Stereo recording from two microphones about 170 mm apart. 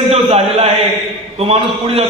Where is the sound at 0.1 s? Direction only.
40° right (ahead or behind).